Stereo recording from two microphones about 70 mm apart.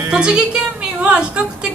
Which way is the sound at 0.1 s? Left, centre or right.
Centre.